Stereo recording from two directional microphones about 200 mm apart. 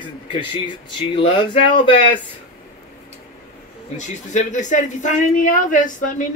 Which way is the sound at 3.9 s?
35° left (ahead or behind).